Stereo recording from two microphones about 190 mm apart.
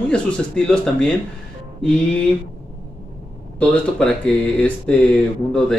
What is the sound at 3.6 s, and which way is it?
Speech, 5° left (ahead or behind).